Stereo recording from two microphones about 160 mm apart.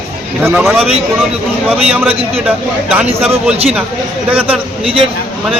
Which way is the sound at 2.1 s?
40° right (ahead or behind).